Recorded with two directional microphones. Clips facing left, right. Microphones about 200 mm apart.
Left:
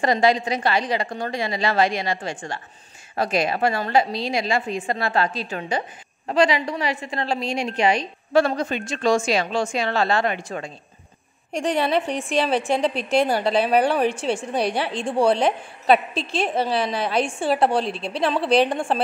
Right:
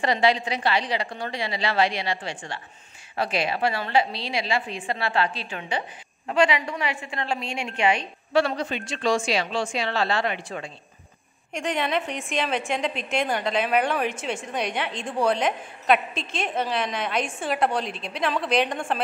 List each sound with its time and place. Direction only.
0.0 s a woman's voice: 45° left (ahead or behind)